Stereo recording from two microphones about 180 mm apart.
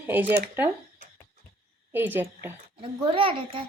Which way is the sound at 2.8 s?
30° right (ahead or behind).